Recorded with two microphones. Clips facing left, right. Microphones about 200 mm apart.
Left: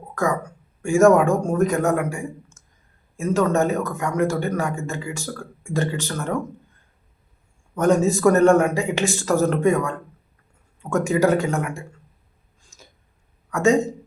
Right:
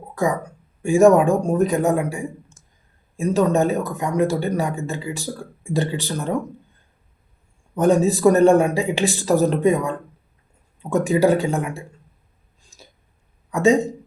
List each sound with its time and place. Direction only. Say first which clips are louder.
0.1 s speech: right 1 dB; 15° right (ahead or behind)
3.2 s speech: right 2 dB; 15° right (ahead or behind)
7.8 s speech: right 1 dB; 15° right (ahead or behind)
12.7 s hiccup: right 2 dB; 35° right (ahead or behind)
13.5 s speech: right 2 dB; 15° right (ahead or behind)